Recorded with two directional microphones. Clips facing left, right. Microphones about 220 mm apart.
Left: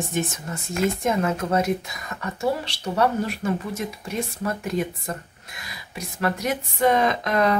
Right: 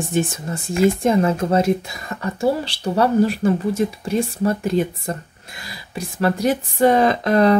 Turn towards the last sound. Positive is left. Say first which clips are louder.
# right 6 dB
turn(degrees=-35)  # may be behind; listen again after turning